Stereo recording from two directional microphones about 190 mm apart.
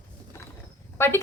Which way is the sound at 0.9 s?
10° left (ahead or behind).